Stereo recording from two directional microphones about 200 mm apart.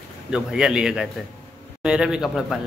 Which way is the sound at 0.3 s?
5° right (ahead or behind).